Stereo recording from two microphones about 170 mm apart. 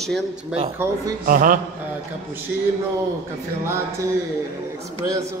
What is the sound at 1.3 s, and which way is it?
Speech, 55° right (ahead or behind).